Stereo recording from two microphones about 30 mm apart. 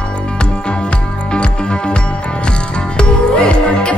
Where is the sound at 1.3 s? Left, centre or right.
Left.